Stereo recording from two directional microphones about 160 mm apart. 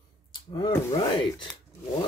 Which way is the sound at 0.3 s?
30° left (ahead or behind).